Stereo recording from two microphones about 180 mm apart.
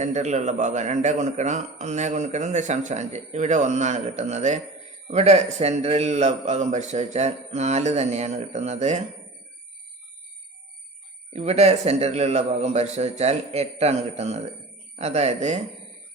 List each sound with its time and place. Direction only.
0.0 s a man's voice: 40° right (ahead or behind)
11.3 s a man's voice: 35° right (ahead or behind)